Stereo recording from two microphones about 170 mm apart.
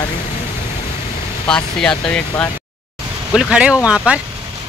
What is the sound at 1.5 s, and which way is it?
Speech, 5° left (ahead or behind).